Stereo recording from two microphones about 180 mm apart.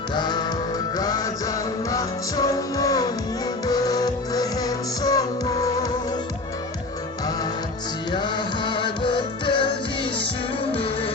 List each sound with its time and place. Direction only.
0.1 s music: 25° left (ahead or behind)
8.1 s music: 25° left (ahead or behind)